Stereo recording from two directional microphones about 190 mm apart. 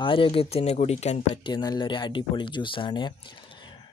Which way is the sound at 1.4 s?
25° left (ahead or behind).